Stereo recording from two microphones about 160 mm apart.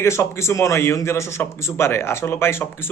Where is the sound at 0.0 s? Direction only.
15° left (ahead or behind).